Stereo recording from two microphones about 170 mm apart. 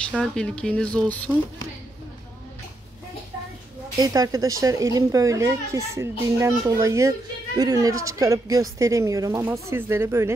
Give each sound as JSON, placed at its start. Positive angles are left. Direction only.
{"t": 0.2, "sound": "speech", "side_deg": 5}
{"t": 4.0, "sound": "a woman's voice", "side_deg": -20}